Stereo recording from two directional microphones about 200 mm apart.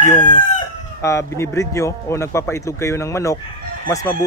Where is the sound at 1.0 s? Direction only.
15° left (ahead or behind).